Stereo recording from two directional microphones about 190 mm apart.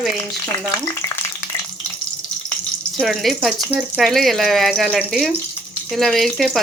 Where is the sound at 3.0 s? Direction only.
Centre (ahead or behind).